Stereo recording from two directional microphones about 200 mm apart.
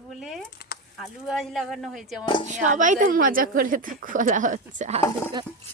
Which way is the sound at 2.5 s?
40° right (ahead or behind).